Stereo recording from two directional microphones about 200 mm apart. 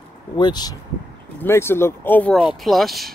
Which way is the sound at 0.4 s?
20° left (ahead or behind).